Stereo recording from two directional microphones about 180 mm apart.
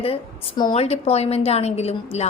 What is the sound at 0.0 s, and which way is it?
A woman's voice, 30° left (ahead or behind).